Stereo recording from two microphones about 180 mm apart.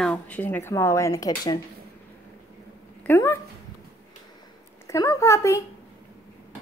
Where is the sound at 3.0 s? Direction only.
10° left (ahead or behind).